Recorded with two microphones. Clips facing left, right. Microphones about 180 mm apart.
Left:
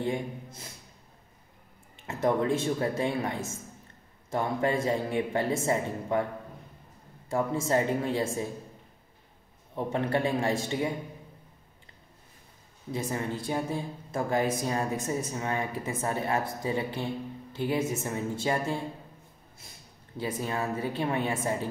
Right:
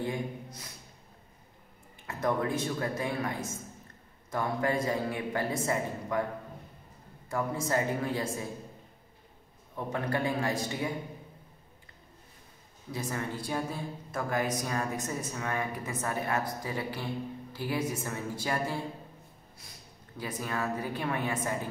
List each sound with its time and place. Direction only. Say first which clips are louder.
0.0 s speech: left 3 dB; 25° left (ahead or behind)
2.0 s speech: left 4 dB; 25° left (ahead or behind)
7.2 s speech: left 4 dB; 25° left (ahead or behind)
9.8 s speech: left 4 dB; 25° left (ahead or behind)
12.9 s speech: left 3 dB; 20° left (ahead or behind)
20.2 s speech: left 3 dB; 25° left (ahead or behind)